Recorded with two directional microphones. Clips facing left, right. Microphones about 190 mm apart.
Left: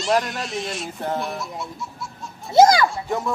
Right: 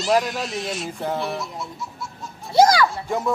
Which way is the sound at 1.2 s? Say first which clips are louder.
Right 1 dB; centre (ahead or behind).